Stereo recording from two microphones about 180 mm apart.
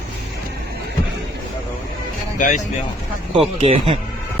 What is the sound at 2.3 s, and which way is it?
Speech, 45° left (ahead or behind).